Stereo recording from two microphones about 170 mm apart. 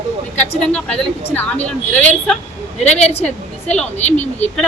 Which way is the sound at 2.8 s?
40° left (ahead or behind).